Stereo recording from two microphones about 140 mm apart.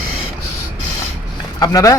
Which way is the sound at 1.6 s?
25° left (ahead or behind).